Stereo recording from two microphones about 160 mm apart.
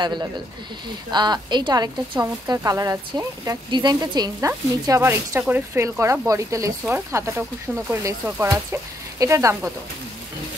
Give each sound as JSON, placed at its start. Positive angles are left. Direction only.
{"t": 0.0, "sound": "speech", "side_deg": -30}